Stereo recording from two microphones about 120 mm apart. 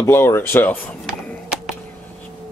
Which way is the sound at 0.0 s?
20° left (ahead or behind).